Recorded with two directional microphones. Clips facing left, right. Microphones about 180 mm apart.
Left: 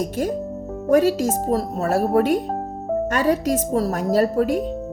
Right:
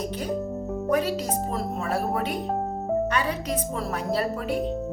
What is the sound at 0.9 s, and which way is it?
Speech, 45° left (ahead or behind).